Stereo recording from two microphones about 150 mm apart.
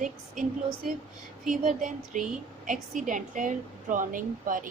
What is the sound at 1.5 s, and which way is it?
A woman's voice, 55° right (ahead or behind).